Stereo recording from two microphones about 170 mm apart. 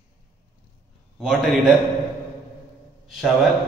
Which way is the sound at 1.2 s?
5° right (ahead or behind).